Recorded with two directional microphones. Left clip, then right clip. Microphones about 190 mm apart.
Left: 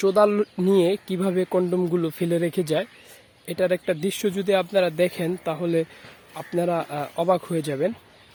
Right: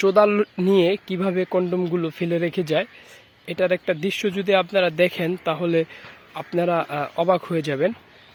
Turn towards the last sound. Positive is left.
turn(degrees=10)  # may be behind; listen again after turning